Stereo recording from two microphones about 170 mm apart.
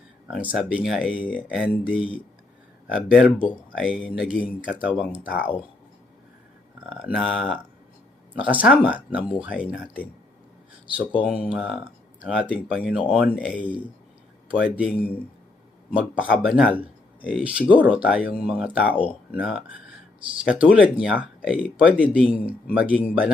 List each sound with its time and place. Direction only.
0.3 s speech: 5° right (ahead or behind)
2.9 s speech: 5° right (ahead or behind)
6.9 s speech: 5° right (ahead or behind)
11.1 s speech: 5° right (ahead or behind)
16.0 s speech: 5° right (ahead or behind)